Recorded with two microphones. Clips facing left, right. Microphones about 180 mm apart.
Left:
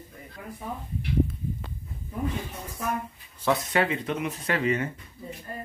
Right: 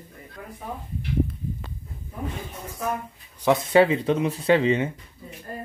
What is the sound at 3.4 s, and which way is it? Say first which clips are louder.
Speech: right 7 dB; 25° right (ahead or behind).